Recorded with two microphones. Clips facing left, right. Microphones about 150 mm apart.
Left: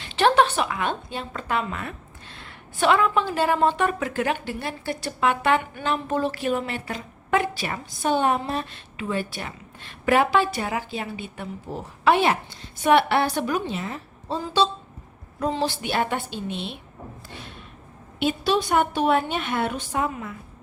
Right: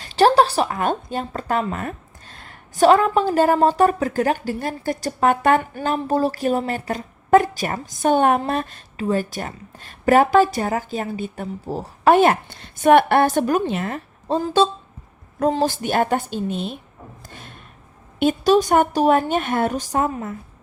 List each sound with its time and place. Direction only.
0.0 s a woman's voice: 40° right (ahead or behind); by 8.6 s 60° right (ahead or behind)
8.7 s a woman's voice: 40° right (ahead or behind)
17.2 s thump: 45° right (ahead or behind)
18.2 s a woman's voice: 45° right (ahead or behind)